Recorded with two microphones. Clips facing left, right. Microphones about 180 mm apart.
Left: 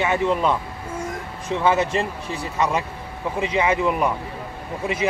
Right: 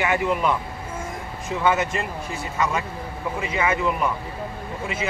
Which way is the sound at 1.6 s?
35° left (ahead or behind).